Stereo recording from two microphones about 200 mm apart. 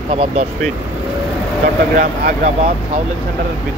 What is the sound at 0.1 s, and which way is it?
Speech, 35° right (ahead or behind).